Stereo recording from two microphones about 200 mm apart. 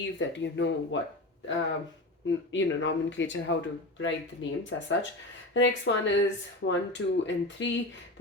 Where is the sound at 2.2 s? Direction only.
70° left (ahead or behind).